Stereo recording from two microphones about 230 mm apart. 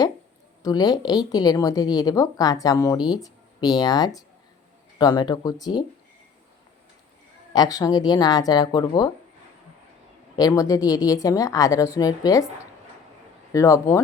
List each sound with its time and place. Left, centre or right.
0.6 s a woman's voice: centre
7.5 s a woman's voice: centre
10.3 s a woman's voice: centre
13.5 s a woman's voice: centre